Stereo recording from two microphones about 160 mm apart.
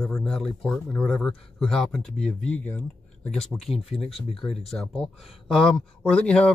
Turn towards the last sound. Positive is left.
turn(degrees=5)  # may be behind; listen again after turning